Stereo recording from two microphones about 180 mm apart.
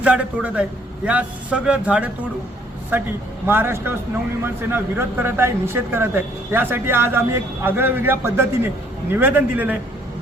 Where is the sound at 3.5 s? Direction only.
10° right (ahead or behind).